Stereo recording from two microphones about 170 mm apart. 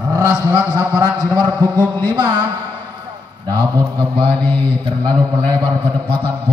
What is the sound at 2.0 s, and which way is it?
Speech, 30° right (ahead or behind).